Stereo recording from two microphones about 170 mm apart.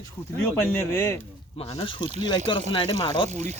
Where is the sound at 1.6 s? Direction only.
35° left (ahead or behind).